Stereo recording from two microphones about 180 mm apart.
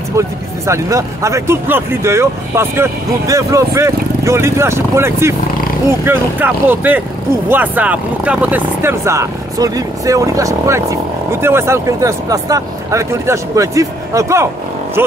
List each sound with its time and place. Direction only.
0.7 s speech: 15° right (ahead or behind)